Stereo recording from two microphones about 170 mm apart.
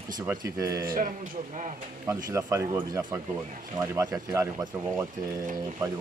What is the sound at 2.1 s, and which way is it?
Speech, 15° right (ahead or behind).